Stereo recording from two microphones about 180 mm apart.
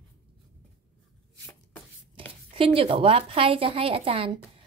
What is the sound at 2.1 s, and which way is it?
A woman's voice, 30° right (ahead or behind).